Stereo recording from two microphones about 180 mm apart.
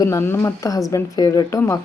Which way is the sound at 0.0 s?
15° left (ahead or behind).